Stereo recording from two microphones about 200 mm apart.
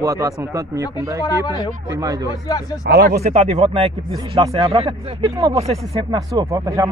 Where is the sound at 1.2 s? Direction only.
15° left (ahead or behind).